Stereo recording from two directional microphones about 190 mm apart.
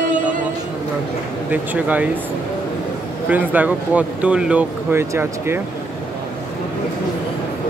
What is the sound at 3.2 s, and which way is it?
Speech, 10° right (ahead or behind).